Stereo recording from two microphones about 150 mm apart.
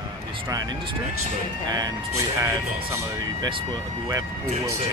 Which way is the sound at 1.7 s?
25° right (ahead or behind).